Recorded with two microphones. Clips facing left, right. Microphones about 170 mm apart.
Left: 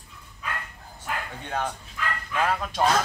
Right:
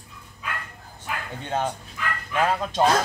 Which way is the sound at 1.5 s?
20° right (ahead or behind).